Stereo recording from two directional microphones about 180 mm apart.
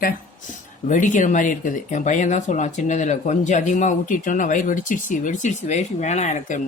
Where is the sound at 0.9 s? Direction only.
45° left (ahead or behind).